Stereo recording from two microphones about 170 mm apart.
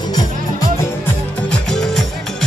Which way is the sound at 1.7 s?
5° left (ahead or behind).